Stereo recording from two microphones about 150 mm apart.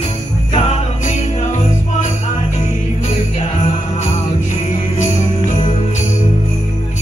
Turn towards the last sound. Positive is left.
turn(degrees=50)  # may be behind; listen again after turning